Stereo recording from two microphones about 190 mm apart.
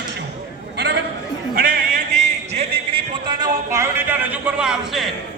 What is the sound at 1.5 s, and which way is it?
Music, 50° right (ahead or behind).